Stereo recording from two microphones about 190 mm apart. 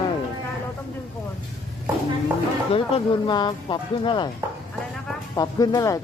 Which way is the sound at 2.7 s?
25° left (ahead or behind).